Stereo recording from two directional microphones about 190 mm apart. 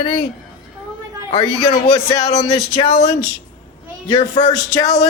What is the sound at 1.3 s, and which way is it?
Speech, 30° left (ahead or behind).